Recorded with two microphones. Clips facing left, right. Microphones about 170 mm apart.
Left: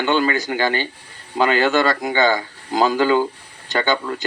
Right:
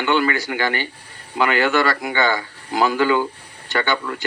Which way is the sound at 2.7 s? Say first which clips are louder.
Left 1 dB; 40° left (ahead or behind).